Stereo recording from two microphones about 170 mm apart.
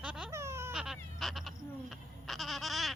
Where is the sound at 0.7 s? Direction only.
5° right (ahead or behind).